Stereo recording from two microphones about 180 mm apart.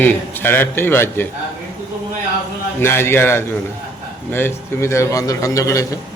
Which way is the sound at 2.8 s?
15° left (ahead or behind).